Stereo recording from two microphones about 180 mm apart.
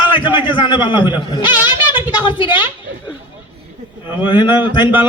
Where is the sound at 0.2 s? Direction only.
25° left (ahead or behind).